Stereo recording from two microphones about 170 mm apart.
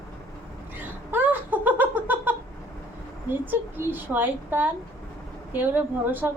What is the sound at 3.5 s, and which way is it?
A woman's voice, 10° right (ahead or behind).